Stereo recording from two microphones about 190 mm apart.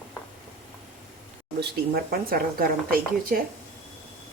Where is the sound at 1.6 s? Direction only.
55° right (ahead or behind).